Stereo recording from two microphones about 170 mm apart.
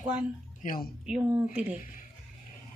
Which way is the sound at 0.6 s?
55° left (ahead or behind).